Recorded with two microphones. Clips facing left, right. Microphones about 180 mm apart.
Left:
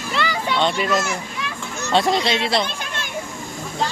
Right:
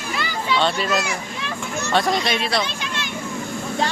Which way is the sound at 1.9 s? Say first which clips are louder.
Left 2 dB; 25° left (ahead or behind).